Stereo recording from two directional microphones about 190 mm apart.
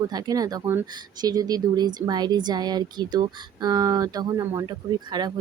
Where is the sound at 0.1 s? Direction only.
20° right (ahead or behind).